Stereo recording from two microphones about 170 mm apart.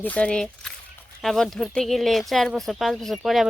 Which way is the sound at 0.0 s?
10° left (ahead or behind).